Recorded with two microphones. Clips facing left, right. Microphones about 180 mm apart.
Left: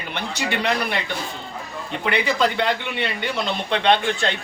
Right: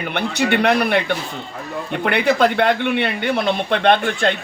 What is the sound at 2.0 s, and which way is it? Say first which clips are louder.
A man's voice: right 5 dB; 60° right (ahead or behind).